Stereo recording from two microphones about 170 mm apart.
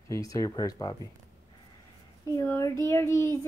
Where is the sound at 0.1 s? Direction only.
20° left (ahead or behind).